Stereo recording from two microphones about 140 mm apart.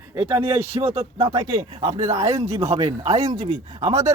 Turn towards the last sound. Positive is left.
turn(degrees=-25)  # may be behind; listen again after turning